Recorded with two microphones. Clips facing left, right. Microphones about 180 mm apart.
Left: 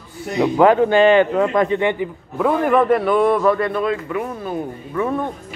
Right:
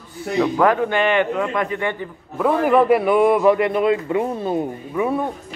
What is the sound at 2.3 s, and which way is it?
A man's voice, 5° right (ahead or behind).